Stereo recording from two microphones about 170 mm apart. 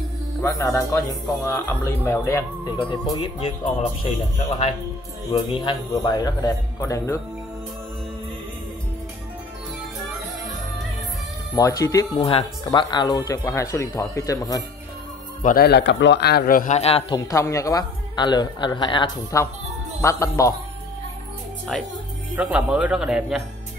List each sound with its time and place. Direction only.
0.4 s speech: 15° left (ahead or behind)
2.8 s music: 30° left (ahead or behind)
5.6 s speech: 25° left (ahead or behind)
11.5 s speech: 20° left (ahead or behind)
12.2 s speech: 35° left (ahead or behind)
15.4 s a man's voice: 65° left (ahead or behind)
16.7 s music: 35° left (ahead or behind)
17.3 s speech: 20° left (ahead or behind)
20.0 s speech: 20° left (ahead or behind)
22.3 s a man's voice: 5° right (ahead or behind)